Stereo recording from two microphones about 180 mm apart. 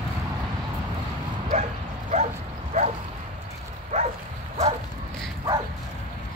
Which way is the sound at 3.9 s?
40° right (ahead or behind).